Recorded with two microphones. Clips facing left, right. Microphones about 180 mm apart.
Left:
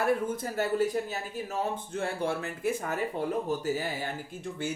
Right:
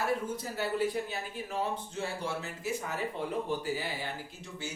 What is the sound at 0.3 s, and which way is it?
A man's voice, 50° left (ahead or behind).